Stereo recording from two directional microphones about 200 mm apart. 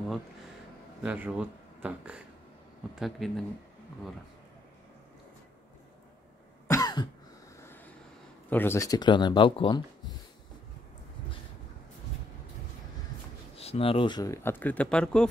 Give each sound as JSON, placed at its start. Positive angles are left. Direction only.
{"t": 1.0, "sound": "speech", "side_deg": -5}
{"t": 6.7, "sound": "cough", "side_deg": 20}
{"t": 8.5, "sound": "speech", "side_deg": 10}
{"t": 13.6, "sound": "speech", "side_deg": 30}